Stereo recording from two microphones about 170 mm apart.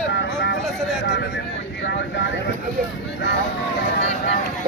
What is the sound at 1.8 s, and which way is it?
Vehicle, 90° left.